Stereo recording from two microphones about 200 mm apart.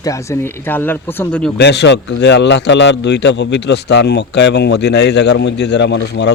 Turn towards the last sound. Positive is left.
turn(degrees=60)  # may be behind; listen again after turning